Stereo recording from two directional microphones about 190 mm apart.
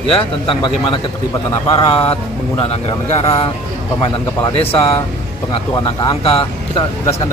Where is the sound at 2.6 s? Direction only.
30° left (ahead or behind).